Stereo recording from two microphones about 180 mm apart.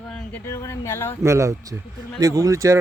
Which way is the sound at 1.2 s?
15° right (ahead or behind).